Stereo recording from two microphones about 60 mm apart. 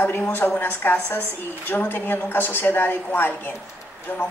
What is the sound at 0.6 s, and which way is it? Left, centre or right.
Speech, left.